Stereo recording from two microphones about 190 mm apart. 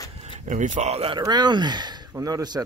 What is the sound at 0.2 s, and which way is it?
Speech, 40° right (ahead or behind).